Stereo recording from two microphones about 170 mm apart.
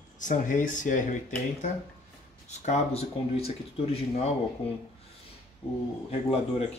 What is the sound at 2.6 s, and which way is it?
Speech, 40° left (ahead or behind).